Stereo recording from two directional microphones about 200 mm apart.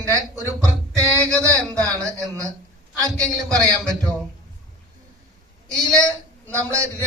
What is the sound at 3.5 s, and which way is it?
Speech, 15° right (ahead or behind).